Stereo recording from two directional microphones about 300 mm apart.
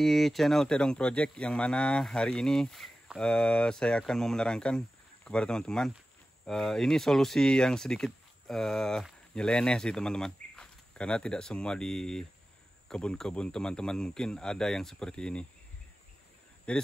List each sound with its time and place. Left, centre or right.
0.0 s speech: centre
16.7 s speech: centre